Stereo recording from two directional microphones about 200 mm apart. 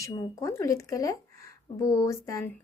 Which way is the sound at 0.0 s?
15° left (ahead or behind).